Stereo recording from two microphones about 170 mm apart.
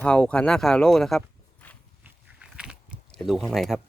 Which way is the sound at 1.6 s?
10° left (ahead or behind).